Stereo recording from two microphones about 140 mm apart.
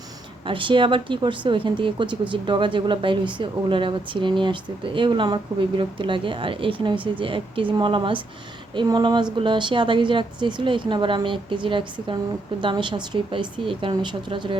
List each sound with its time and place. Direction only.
0.4 s speech: 35° right (ahead or behind)